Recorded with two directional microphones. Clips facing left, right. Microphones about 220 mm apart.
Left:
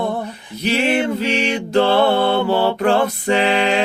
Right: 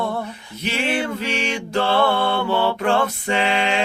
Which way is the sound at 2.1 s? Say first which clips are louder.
Left 4 dB; 40° left (ahead or behind).